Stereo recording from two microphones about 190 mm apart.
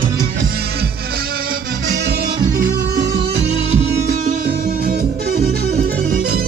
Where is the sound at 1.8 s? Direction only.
65° right (ahead or behind).